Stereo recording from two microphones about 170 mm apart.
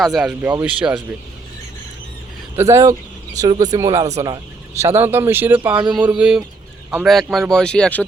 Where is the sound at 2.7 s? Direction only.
20° right (ahead or behind).